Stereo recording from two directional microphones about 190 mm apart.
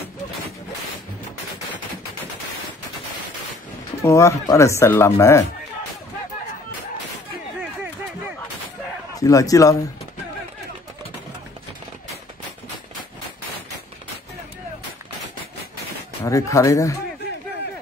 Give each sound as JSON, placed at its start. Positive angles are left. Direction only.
{"t": 4.0, "sound": "speech", "side_deg": 15}
{"t": 9.1, "sound": "speech", "side_deg": 15}
{"t": 16.3, "sound": "speech", "side_deg": 15}